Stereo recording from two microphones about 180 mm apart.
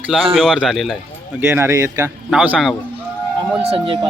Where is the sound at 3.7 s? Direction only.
30° right (ahead or behind).